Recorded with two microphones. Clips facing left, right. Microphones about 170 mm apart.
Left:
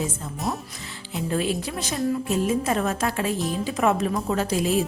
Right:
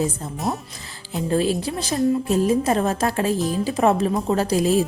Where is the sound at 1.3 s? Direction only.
35° right (ahead or behind).